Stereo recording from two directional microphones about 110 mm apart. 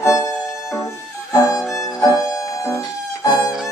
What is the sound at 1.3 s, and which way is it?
Violin, 30° left (ahead or behind).